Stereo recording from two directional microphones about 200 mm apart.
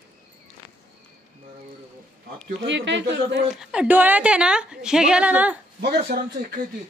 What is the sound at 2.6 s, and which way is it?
Speech, 65° right (ahead or behind).